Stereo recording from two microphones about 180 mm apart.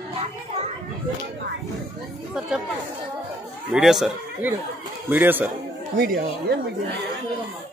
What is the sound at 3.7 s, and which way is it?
A man's voice, centre (ahead or behind).